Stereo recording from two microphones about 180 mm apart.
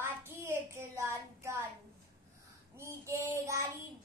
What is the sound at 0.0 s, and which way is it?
Child singing, 15° right (ahead or behind).